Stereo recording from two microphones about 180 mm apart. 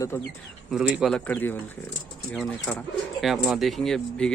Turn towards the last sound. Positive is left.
turn(degrees=0)  # may be behind; listen again after turning